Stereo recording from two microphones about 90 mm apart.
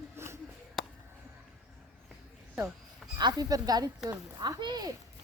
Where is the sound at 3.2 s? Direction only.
50° right (ahead or behind).